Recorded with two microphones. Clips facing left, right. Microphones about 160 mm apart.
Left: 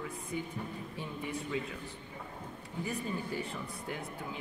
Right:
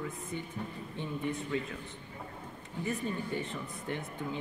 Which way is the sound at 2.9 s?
Centre (ahead or behind).